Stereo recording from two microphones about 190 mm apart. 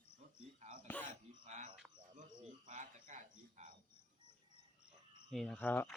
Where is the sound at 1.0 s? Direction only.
40° right (ahead or behind).